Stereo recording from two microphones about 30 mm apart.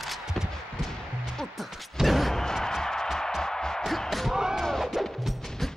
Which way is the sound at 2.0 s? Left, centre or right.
Centre.